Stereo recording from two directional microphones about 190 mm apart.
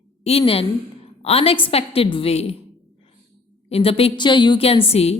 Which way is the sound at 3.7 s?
30° left (ahead or behind).